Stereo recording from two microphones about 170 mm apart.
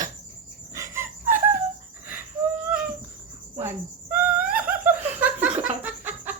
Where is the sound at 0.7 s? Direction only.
15° right (ahead or behind).